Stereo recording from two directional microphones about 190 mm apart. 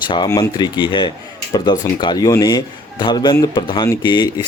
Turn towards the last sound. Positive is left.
turn(degrees=20)  # may be behind; listen again after turning